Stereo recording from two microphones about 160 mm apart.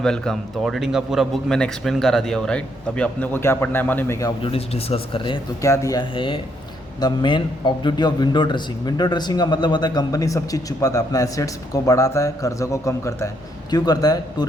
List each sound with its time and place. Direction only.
0.0 s a man's voice: 5° left (ahead or behind)
4.4 s speech: 40° left (ahead or behind)
5.6 s a man's voice: 20° left (ahead or behind)